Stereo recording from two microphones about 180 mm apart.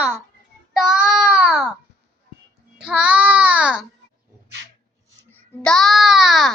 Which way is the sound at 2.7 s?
5° right (ahead or behind).